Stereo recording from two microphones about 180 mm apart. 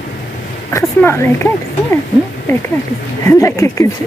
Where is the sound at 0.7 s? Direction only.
15° left (ahead or behind).